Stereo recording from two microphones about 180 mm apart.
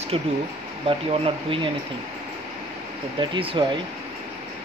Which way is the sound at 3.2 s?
30° right (ahead or behind).